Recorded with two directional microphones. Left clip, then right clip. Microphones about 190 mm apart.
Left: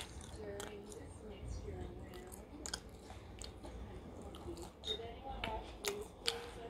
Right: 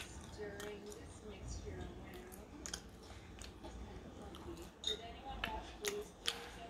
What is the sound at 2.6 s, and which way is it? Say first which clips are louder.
Chewing: left 2 dB; 10° left (ahead or behind).